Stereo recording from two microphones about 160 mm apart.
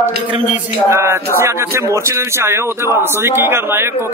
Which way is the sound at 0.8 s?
15° right (ahead or behind).